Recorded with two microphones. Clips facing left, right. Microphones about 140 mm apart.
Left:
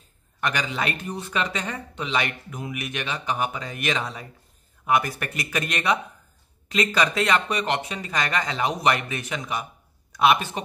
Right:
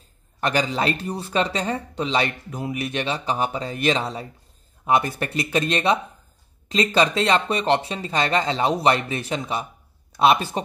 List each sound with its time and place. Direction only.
0.4 s a man's voice: 35° right (ahead or behind)